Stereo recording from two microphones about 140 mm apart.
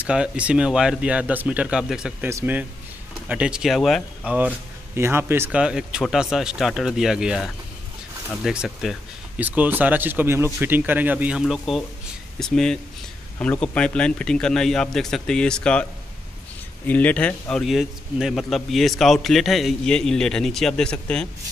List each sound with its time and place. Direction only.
0.0 s speech: 10° right (ahead or behind)
2.2 s speech: 15° right (ahead or behind)
9.4 s a man's voice: 10° right (ahead or behind); by 21.3 s 5° left (ahead or behind)